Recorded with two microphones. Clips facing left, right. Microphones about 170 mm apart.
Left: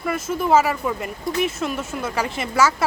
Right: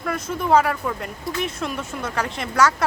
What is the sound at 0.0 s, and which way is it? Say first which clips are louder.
A woman's voice: left 2 dB; 5° left (ahead or behind).